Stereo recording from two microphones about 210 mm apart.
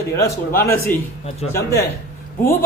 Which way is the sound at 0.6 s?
15° left (ahead or behind).